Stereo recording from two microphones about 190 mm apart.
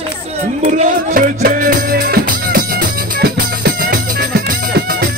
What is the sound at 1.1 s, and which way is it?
Music, 45° right (ahead or behind).